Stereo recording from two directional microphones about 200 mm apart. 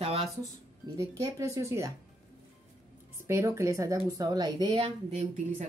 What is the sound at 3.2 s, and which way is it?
A woman's voice, 15° right (ahead or behind).